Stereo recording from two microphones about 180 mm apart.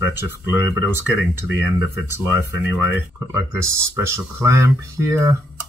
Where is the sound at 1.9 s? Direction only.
15° right (ahead or behind).